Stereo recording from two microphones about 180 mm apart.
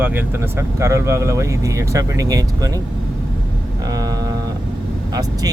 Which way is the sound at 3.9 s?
20° right (ahead or behind).